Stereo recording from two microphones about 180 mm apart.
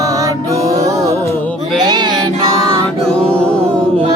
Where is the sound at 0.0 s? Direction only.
20° right (ahead or behind).